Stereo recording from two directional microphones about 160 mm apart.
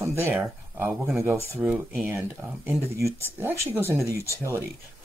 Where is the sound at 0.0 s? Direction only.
15° right (ahead or behind).